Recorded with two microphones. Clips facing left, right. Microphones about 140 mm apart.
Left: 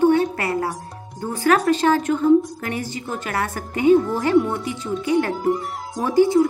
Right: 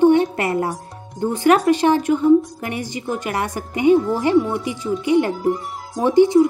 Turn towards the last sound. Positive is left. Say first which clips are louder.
# right 3 dB
turn(degrees=-20)  # may be behind; listen again after turning